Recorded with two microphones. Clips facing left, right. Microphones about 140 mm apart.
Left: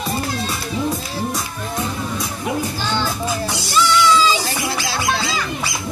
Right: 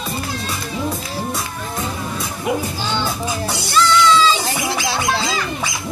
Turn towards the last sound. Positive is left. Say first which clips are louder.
# right 2 dB
turn(degrees=-20)  # may be behind; listen again after turning